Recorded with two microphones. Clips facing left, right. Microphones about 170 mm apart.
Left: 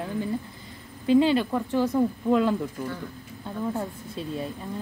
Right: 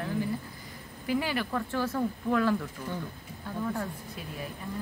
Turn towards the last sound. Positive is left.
turn(degrees=25)  # may be behind; listen again after turning